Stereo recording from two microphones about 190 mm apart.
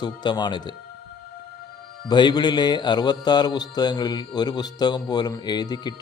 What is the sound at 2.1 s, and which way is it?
Speech, 25° left (ahead or behind).